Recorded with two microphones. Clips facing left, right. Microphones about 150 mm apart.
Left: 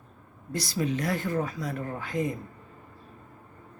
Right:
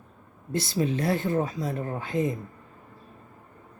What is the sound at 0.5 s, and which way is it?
Speech, 25° right (ahead or behind).